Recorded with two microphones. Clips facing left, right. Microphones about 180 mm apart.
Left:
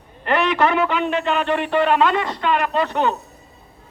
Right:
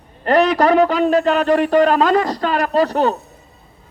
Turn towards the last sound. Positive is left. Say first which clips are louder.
# right 4 dB
turn(degrees=-40)  # may be behind; listen again after turning